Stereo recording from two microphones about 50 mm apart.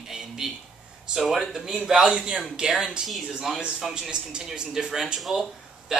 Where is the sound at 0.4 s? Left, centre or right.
Centre.